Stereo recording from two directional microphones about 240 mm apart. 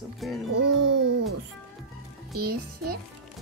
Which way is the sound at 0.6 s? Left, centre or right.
Right.